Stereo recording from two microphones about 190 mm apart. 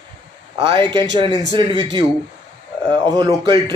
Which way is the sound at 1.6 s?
25° right (ahead or behind).